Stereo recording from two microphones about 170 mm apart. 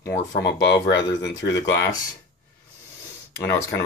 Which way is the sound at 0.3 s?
90° left.